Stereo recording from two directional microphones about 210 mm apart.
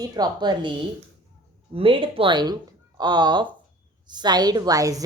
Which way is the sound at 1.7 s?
25° right (ahead or behind).